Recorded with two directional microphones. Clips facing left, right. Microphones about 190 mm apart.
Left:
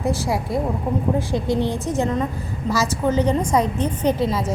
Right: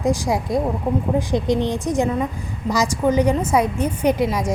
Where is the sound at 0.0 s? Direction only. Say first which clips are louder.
Right 2 dB; 15° right (ahead or behind).